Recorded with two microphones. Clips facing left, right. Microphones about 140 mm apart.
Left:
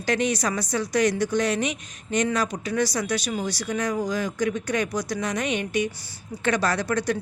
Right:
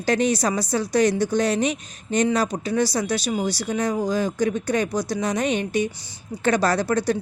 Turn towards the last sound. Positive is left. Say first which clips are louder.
# right 3 dB
turn(degrees=-30)  # may be behind; listen again after turning